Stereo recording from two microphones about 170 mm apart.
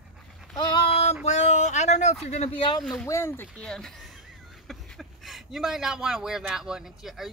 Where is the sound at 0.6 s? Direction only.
35° left (ahead or behind).